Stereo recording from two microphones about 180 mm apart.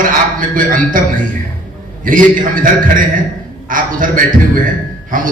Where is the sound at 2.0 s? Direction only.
50° right (ahead or behind).